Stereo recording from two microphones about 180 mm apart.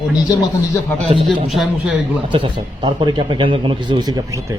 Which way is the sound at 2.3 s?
25° right (ahead or behind).